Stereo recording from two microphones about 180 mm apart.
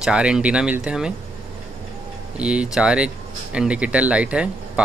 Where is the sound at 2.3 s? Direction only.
5° right (ahead or behind).